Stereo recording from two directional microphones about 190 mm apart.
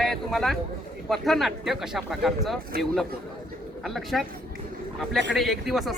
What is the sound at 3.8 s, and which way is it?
Speech, centre (ahead or behind).